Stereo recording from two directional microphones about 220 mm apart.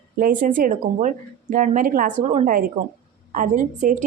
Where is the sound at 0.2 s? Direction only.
40° right (ahead or behind).